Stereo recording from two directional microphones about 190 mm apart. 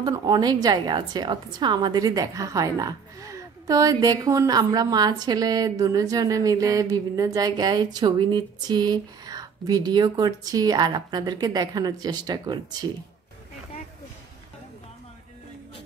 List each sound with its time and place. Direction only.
0.0 s a woman's voice: 20° right (ahead or behind)